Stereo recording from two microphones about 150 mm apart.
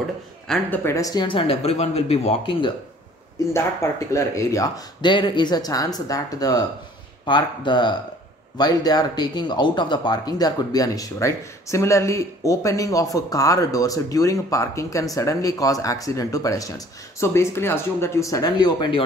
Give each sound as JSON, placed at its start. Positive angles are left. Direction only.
{"t": 0.5, "sound": "speech", "side_deg": 15}
{"t": 3.5, "sound": "speech", "side_deg": 15}